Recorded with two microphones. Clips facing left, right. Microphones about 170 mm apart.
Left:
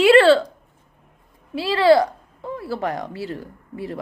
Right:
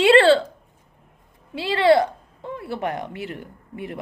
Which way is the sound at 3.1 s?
30° left (ahead or behind).